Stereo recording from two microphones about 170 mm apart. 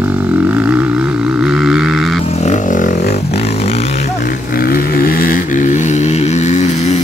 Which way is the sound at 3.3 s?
40° left (ahead or behind).